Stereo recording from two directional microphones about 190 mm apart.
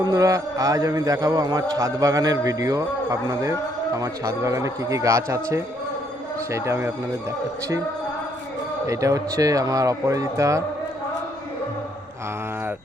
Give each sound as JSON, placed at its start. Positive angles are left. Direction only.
{"t": 0.1, "sound": "a man's voice", "side_deg": -15}
{"t": 8.9, "sound": "a man's voice", "side_deg": -15}